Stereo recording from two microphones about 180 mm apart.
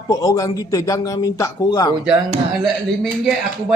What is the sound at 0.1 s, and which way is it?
Speech, 20° left (ahead or behind).